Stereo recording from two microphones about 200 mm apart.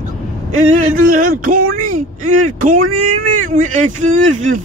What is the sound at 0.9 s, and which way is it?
Speech, 45° right (ahead or behind).